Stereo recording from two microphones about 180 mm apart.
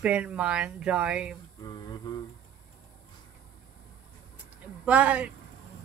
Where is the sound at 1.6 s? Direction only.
25° left (ahead or behind).